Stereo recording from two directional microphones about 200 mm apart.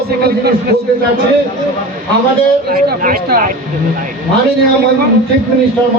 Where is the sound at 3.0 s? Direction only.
45° right (ahead or behind).